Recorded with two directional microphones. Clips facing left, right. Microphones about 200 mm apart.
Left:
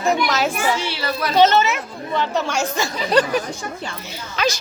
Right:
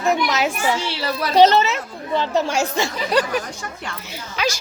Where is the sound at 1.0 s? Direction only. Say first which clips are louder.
Right 2 dB; 35° right (ahead or behind).